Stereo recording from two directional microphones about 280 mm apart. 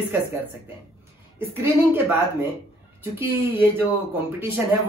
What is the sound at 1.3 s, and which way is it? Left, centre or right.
Speech, centre.